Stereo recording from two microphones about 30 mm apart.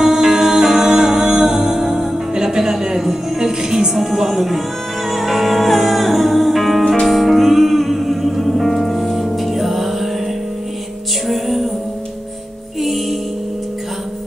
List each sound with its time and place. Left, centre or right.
0.0 s music: centre
11.2 s music: centre